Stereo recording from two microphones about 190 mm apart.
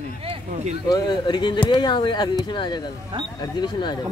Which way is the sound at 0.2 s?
30° right (ahead or behind).